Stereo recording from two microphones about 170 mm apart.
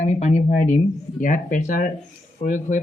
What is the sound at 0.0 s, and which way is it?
Speech, 45° left (ahead or behind).